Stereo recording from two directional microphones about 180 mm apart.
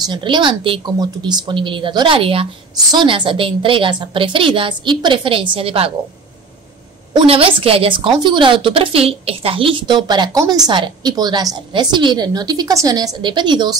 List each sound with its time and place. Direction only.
0.0 s a woman's voice: 25° right (ahead or behind)
7.2 s a woman's voice: 30° right (ahead or behind)